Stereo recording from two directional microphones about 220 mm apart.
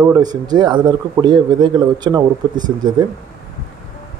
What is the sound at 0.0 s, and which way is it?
A man's voice, 20° right (ahead or behind).